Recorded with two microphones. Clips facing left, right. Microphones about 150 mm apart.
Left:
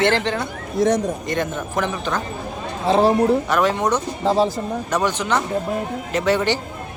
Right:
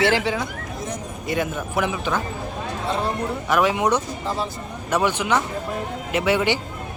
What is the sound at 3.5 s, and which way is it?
Speech, 10° right (ahead or behind).